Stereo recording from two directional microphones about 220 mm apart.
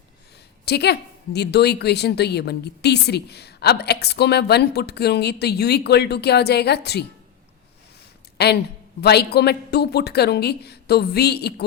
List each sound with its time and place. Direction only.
0.6 s a woman's voice: 50° left (ahead or behind)
9.0 s a woman's voice: 50° left (ahead or behind)